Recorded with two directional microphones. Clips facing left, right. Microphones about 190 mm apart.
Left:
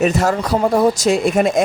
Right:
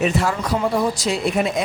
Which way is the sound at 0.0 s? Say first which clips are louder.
Left 4 dB; 45° left (ahead or behind).